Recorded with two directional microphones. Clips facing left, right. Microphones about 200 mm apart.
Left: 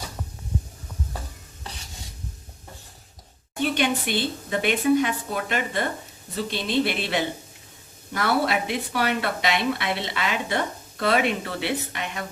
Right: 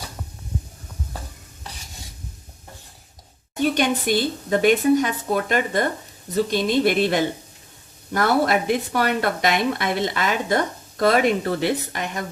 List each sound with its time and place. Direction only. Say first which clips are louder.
3.6 s speech: right 3 dB; 45° right (ahead or behind)